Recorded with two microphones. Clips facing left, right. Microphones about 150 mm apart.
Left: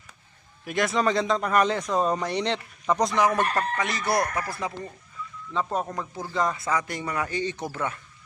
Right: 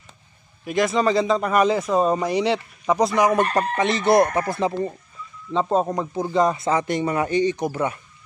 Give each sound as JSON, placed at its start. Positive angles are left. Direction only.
{"t": 0.7, "sound": "speech", "side_deg": 0}
{"t": 3.5, "sound": "speech", "side_deg": -25}